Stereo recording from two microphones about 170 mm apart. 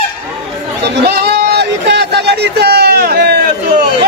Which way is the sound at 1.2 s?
85° right.